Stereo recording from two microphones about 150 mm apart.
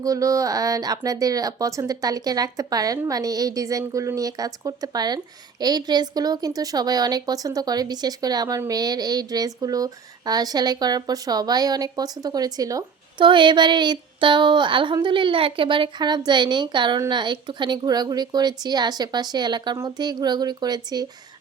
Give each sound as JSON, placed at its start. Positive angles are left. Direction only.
{"t": 0.0, "sound": "speech", "side_deg": -20}